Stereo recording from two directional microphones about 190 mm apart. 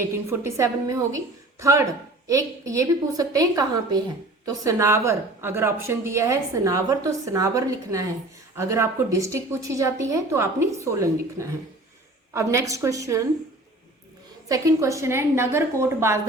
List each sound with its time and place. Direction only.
0.0 s a woman's voice: 15° right (ahead or behind)
14.4 s a woman's voice: 15° right (ahead or behind)